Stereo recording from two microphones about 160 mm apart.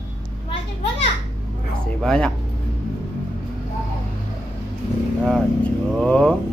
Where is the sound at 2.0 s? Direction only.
5° left (ahead or behind).